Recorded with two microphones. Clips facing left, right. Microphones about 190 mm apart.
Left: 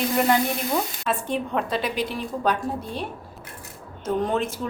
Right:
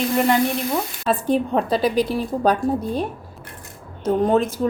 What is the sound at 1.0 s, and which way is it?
A woman's voice, 40° right (ahead or behind).